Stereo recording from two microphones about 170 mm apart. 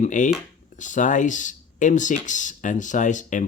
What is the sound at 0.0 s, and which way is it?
Speech, 50° left (ahead or behind).